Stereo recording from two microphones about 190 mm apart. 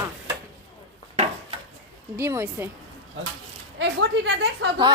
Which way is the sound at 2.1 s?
15° right (ahead or behind).